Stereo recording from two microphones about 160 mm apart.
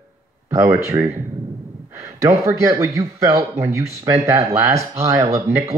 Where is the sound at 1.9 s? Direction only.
20° right (ahead or behind).